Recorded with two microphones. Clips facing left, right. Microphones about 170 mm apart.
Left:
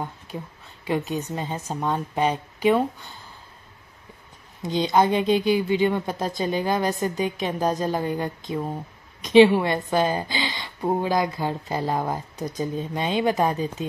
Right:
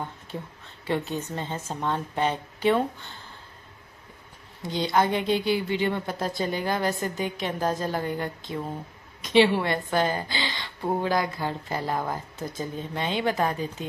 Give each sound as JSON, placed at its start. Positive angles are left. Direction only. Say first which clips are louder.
{"t": 0.8, "sound": "a woman's voice", "louder": "left 2 dB", "side_deg": 15}
{"t": 4.6, "sound": "a woman's voice", "louder": "left 4 dB", "side_deg": 20}